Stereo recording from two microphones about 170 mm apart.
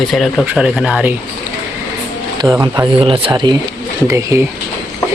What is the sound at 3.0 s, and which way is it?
Speech, 35° right (ahead or behind).